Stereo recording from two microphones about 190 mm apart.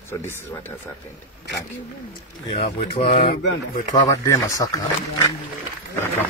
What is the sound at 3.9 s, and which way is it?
Speech, 20° left (ahead or behind).